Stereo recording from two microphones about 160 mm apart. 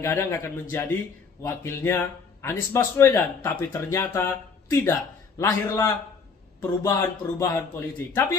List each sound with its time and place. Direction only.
0.0 s a man's voice: 15° left (ahead or behind)